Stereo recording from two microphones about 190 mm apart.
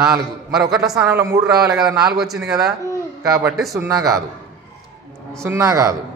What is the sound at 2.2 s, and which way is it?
Speech, centre (ahead or behind).